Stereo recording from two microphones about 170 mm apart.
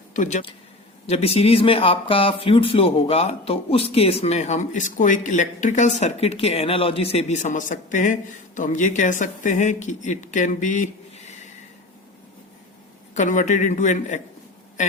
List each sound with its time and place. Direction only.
0.1 s speech: 45° left (ahead or behind)
1.0 s speech: 35° left (ahead or behind)
13.1 s speech: 45° left (ahead or behind)